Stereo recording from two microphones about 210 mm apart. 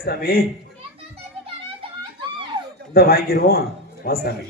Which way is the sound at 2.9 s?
45° left (ahead or behind).